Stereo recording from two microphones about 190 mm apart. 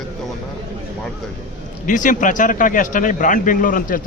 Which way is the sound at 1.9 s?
45° left (ahead or behind).